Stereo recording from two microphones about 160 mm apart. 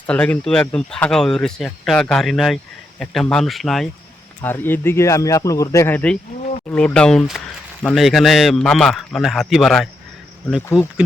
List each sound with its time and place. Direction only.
0.1 s speech: 5° left (ahead or behind)
4.4 s speech: 10° left (ahead or behind)